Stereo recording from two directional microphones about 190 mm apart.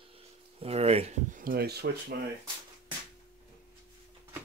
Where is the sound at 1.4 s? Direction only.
50° right (ahead or behind).